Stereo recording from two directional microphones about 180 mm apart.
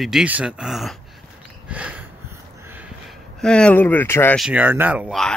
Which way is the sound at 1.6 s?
5° right (ahead or behind).